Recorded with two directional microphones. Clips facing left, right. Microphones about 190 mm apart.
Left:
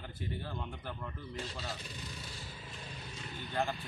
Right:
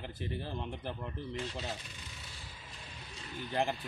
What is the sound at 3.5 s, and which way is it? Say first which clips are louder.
Speech: right 2 dB; 25° right (ahead or behind).